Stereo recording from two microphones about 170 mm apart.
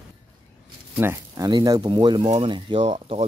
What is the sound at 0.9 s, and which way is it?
Speech, 15° right (ahead or behind).